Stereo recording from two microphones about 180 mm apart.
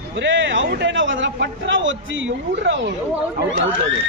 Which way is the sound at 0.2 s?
85° right.